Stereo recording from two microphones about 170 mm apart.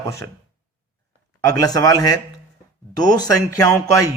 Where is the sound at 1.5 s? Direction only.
20° left (ahead or behind).